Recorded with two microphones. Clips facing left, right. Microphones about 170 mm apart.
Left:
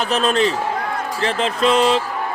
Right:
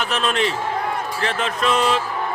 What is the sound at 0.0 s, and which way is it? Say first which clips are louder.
A man's voice: left 4 dB; 35° left (ahead or behind).